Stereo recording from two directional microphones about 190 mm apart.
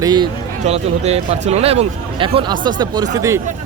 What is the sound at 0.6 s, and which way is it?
Speech, 35° right (ahead or behind).